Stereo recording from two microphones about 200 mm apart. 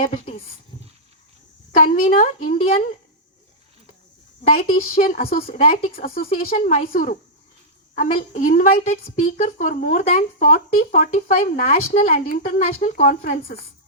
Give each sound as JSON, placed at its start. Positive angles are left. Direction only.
{"t": 1.7, "sound": "a woman's voice", "side_deg": 35}
{"t": 4.4, "sound": "a woman's voice", "side_deg": 45}